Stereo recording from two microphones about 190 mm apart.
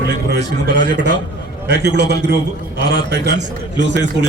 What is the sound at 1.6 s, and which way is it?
A man's voice, 65° right (ahead or behind).